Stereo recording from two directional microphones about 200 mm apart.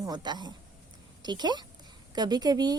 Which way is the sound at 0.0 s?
20° right (ahead or behind).